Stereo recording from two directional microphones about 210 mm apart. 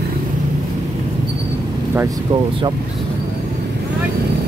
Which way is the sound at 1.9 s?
15° right (ahead or behind).